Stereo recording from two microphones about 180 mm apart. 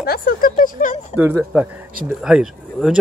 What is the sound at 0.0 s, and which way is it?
Speech, 55° left (ahead or behind).